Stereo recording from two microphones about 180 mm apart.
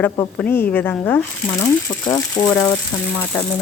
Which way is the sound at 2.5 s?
5° left (ahead or behind).